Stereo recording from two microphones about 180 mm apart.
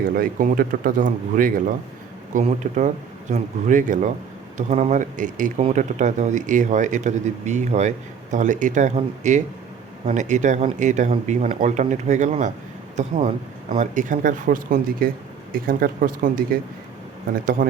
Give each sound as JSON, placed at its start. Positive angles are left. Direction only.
{"t": 0.0, "sound": "speech", "side_deg": -55}